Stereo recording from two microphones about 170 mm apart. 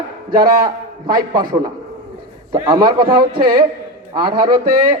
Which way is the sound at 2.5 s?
25° right (ahead or behind).